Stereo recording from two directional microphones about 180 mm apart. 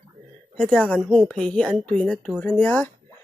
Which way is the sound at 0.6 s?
5° left (ahead or behind).